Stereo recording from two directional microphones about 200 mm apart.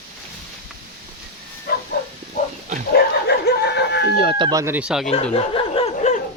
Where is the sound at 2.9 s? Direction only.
55° left (ahead or behind).